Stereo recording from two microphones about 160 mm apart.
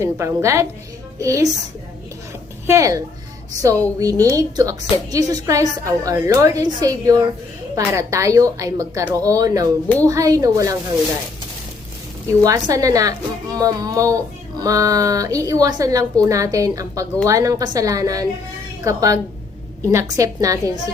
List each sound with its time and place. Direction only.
0.0 s a woman's voice: 15° right (ahead or behind)
2.6 s a woman's voice: 20° right (ahead or behind)
12.4 s a woman's voice: 20° right (ahead or behind)